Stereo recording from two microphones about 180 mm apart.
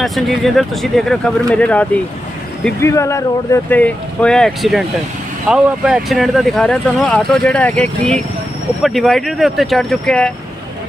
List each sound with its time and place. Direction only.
0.0 s speech: centre (ahead or behind)